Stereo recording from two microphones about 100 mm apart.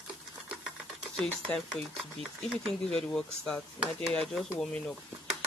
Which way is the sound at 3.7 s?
10° right (ahead or behind).